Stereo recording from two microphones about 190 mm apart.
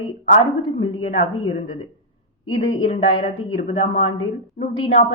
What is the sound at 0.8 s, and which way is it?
Speech, 30° left (ahead or behind).